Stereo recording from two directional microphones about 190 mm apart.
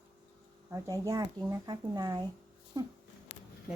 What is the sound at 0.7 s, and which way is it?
Speech, 15° right (ahead or behind).